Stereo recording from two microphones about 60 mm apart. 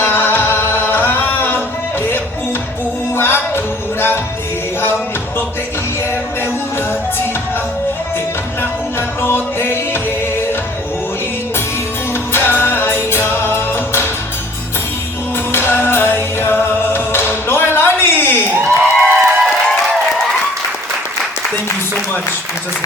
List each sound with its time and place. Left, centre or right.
0.0 s singing: left
3.2 s music: left
9.2 s music: left
12.3 s music: left
15.5 s music: left
18.8 s a sound: right